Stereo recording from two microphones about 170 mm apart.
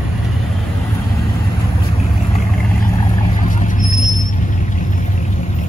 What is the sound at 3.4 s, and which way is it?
Vehicle, 50° left (ahead or behind).